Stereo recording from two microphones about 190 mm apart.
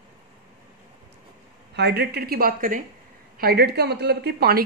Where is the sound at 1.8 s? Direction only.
60° right (ahead or behind).